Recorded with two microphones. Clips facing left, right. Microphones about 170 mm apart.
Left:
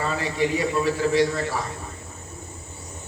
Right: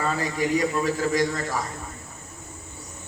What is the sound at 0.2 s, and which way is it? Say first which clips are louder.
A man's voice: left 1 dB; 45° right (ahead or behind).